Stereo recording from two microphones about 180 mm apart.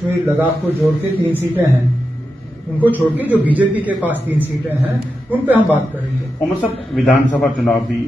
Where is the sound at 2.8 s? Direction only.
10° right (ahead or behind).